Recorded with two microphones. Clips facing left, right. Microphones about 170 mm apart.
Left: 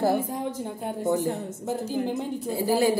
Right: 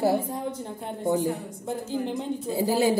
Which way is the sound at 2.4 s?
20° right (ahead or behind).